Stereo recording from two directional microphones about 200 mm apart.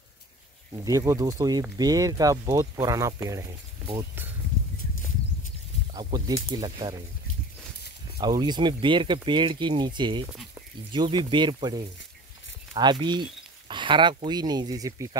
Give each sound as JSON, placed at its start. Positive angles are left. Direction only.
{"t": 0.8, "sound": "speech", "side_deg": -15}
{"t": 5.9, "sound": "speech", "side_deg": -20}
{"t": 8.2, "sound": "speech", "side_deg": -20}
{"t": 13.0, "sound": "speech", "side_deg": -20}